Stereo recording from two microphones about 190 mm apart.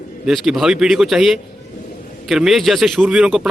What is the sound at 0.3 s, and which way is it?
A man's voice, centre (ahead or behind).